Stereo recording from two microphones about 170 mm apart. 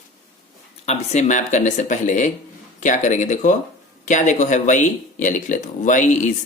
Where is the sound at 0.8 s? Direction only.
40° left (ahead or behind).